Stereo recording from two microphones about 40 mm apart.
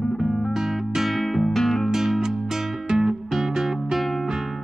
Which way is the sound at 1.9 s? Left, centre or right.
Centre.